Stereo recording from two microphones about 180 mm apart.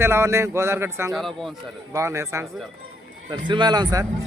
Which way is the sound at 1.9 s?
15° right (ahead or behind).